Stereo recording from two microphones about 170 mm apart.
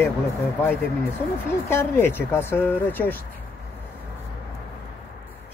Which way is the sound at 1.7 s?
15° left (ahead or behind).